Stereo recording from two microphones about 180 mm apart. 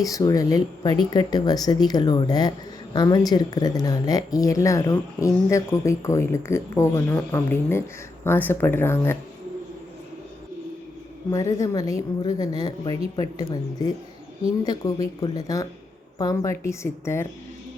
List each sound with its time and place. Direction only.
0.0 s speech: 20° left (ahead or behind)
11.3 s speech: 20° left (ahead or behind)